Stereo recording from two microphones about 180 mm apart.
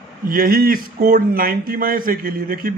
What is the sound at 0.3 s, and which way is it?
Speech, 55° right (ahead or behind).